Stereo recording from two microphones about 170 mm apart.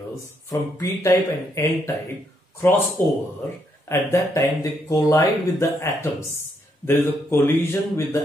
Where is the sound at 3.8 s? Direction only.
20° left (ahead or behind).